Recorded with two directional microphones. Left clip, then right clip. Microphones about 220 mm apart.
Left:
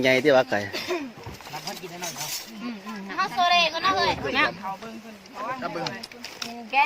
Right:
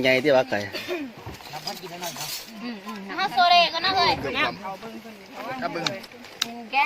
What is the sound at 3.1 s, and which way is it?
Speech, 15° right (ahead or behind).